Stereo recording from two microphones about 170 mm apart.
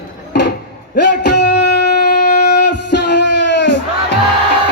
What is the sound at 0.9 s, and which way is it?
Music, 85° left.